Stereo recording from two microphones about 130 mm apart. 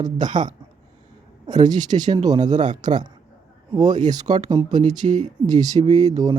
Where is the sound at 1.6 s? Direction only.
30° right (ahead or behind).